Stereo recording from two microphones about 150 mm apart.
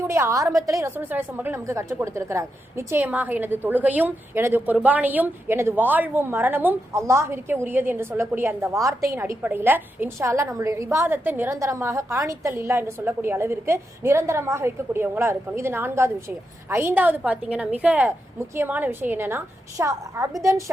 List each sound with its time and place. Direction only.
0.0 s a woman's voice: 20° right (ahead or behind)